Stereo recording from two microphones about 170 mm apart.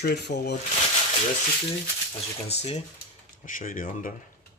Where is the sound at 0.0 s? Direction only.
75° left (ahead or behind).